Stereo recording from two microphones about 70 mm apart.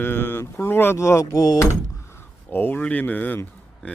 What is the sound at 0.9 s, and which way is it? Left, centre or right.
Speech, left.